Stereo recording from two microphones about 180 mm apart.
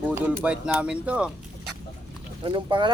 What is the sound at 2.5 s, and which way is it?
Speech, 25° right (ahead or behind).